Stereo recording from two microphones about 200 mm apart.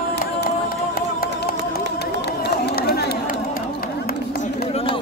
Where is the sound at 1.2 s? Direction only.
50° left (ahead or behind).